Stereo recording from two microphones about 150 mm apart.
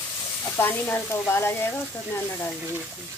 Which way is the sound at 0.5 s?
15° left (ahead or behind).